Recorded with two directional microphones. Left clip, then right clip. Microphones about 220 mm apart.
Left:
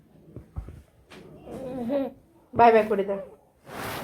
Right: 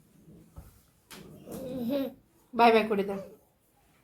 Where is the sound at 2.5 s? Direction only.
45° right (ahead or behind).